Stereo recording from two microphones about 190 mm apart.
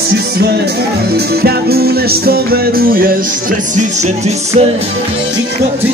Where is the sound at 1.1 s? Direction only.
55° right (ahead or behind).